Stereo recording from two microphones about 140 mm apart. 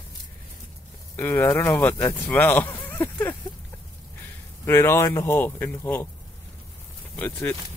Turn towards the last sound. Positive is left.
turn(degrees=15)  # may be behind; listen again after turning